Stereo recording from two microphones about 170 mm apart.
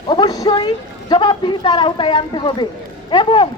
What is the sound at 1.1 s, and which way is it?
Speech, 25° left (ahead or behind).